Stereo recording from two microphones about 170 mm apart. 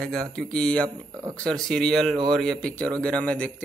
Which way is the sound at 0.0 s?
5° left (ahead or behind).